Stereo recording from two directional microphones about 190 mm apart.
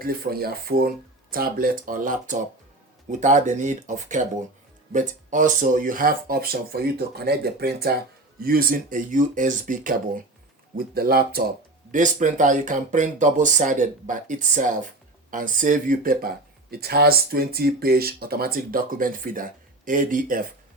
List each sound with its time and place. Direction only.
0.0 s speech: 50° right (ahead or behind)
11.9 s speech: 40° right (ahead or behind)